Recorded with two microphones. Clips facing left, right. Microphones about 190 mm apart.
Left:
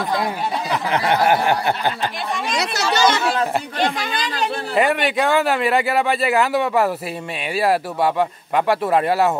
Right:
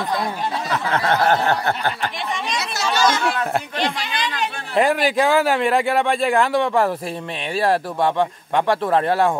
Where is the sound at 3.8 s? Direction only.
45° left (ahead or behind).